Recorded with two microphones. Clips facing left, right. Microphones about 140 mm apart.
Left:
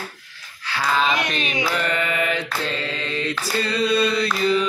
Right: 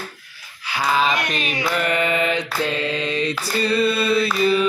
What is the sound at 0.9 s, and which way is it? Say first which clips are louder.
Mantra: even; 5° right (ahead or behind).